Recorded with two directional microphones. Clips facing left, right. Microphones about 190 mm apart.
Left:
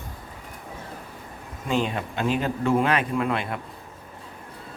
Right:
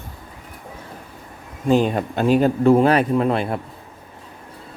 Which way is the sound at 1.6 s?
40° right (ahead or behind).